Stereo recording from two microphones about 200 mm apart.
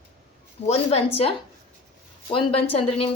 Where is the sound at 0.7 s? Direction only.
30° left (ahead or behind).